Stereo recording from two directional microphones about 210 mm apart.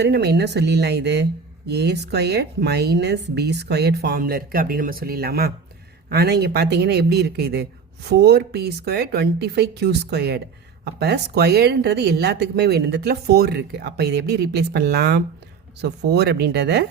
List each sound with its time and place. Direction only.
0.0 s a woman's voice: 50° right (ahead or behind)